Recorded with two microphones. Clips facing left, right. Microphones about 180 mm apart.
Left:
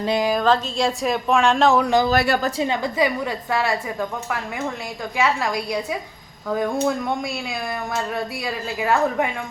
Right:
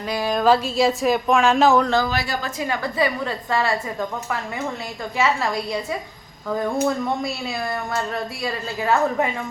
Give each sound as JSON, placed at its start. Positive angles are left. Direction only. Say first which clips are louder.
{"t": 0.0, "sound": "speech", "louder": "left 4 dB", "side_deg": 25}
{"t": 0.4, "sound": "speech", "louder": "right 2 dB", "side_deg": -10}
{"t": 1.8, "sound": "a woman's voice", "louder": "left 2 dB", "side_deg": 15}
{"t": 2.1, "sound": "a woman's voice", "louder": "left 6 dB", "side_deg": 60}
{"t": 2.6, "sound": "a woman's voice", "louder": "left 2 dB", "side_deg": 20}